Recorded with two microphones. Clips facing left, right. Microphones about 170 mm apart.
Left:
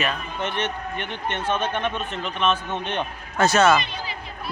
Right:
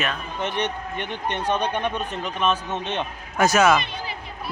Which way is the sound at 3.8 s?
55° right (ahead or behind).